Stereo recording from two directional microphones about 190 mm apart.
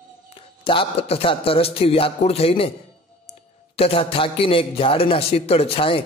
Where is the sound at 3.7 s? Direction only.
30° left (ahead or behind).